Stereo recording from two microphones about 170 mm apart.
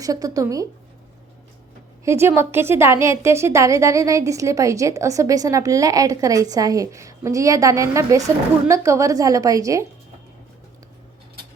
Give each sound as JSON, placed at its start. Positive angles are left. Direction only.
{"t": 0.0, "sound": "a woman's voice", "side_deg": -20}
{"t": 2.0, "sound": "a woman's voice", "side_deg": -15}